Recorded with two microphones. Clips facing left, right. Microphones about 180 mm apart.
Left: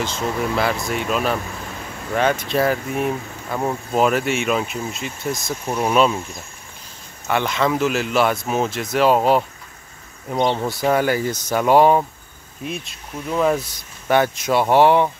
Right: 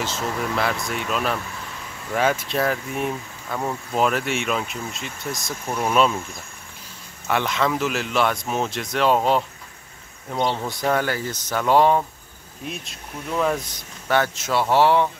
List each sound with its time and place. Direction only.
0.0 s speech: centre (ahead or behind)
7.2 s speech: centre (ahead or behind)
10.3 s speech: 20° left (ahead or behind)
10.7 s speech: 10° left (ahead or behind)
12.6 s speech: centre (ahead or behind); by 15.0 s 15° left (ahead or behind)